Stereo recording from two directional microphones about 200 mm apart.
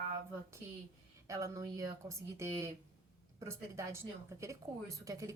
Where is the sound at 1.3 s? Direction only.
15° right (ahead or behind).